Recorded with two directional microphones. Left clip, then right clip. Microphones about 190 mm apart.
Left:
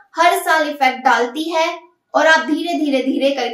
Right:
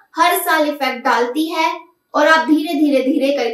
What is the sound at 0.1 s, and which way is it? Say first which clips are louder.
A child's voice: left 1 dB; 15° left (ahead or behind).